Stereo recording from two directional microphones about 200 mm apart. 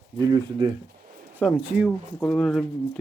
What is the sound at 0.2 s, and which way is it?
Speech, 20° right (ahead or behind).